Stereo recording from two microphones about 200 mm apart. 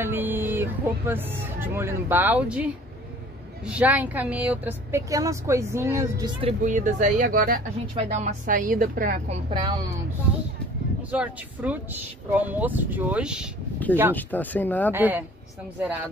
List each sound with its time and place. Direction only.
0.0 s speech: 10° right (ahead or behind)
6.6 s a woman's voice: 40° right (ahead or behind)
7.8 s a woman's voice: 30° right (ahead or behind); by 9.4 s 45° right (ahead or behind)
9.5 s speech: 20° right (ahead or behind)
11.0 s speech: 5° right (ahead or behind)
14.1 s speech: 10° left (ahead or behind)
14.9 s speech: 10° right (ahead or behind)